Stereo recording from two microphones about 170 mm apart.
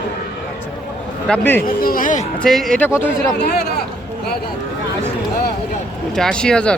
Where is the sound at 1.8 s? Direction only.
55° left (ahead or behind).